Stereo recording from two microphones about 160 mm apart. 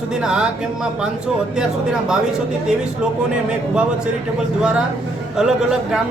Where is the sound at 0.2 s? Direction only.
5° right (ahead or behind).